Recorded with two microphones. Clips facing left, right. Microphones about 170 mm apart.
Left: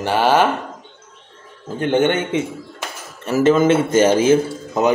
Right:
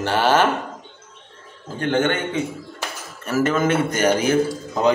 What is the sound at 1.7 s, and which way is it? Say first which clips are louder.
A man's voice: left 4 dB; 20° left (ahead or behind).